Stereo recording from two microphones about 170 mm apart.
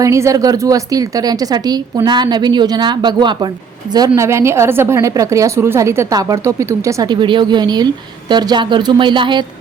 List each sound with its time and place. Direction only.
0.0 s a woman's voice: 20° right (ahead or behind)